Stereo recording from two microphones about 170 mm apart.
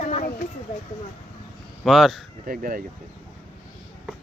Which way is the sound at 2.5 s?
55° right (ahead or behind).